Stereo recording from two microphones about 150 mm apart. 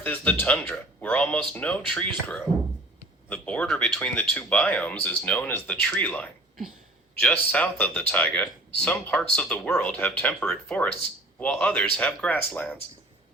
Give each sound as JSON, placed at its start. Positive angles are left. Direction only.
{"t": 0.0, "sound": "speech", "side_deg": 10}